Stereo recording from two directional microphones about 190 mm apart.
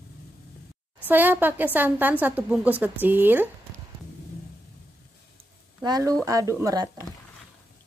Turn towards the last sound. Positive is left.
turn(degrees=-20)  # may be behind; listen again after turning